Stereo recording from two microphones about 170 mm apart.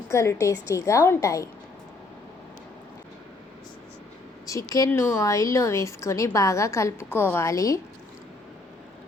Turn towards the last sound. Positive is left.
turn(degrees=20)  # may be behind; listen again after turning